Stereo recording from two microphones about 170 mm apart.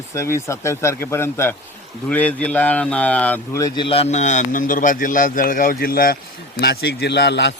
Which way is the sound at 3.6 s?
30° left (ahead or behind).